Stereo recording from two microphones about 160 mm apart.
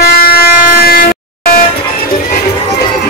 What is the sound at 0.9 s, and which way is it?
Air horn, 65° left (ahead or behind).